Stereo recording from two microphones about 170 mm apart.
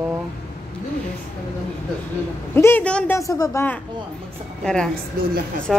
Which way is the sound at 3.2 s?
20° left (ahead or behind).